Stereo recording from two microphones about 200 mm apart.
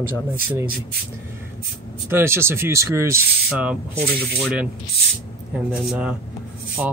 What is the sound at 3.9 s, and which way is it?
Speech, 50° right (ahead or behind).